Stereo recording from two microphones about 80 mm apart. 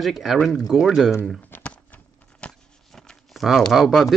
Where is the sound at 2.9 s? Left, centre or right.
Centre.